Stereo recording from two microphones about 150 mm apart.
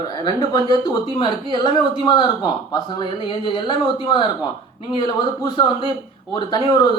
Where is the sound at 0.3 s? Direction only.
25° left (ahead or behind).